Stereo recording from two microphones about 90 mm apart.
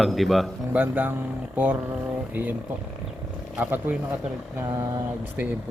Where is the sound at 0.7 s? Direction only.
20° right (ahead or behind).